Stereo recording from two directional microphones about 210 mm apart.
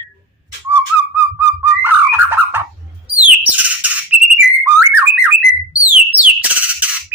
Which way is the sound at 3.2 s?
5° right (ahead or behind).